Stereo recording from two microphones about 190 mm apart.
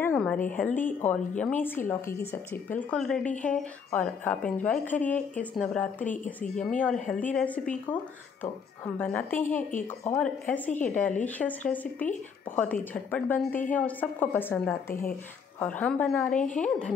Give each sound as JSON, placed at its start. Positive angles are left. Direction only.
{"t": 0.0, "sound": "a sound", "side_deg": 10}
{"t": 0.6, "sound": "a woman's voice", "side_deg": 5}
{"t": 9.6, "sound": "speech", "side_deg": 40}
{"t": 10.1, "sound": "a woman's voice", "side_deg": 5}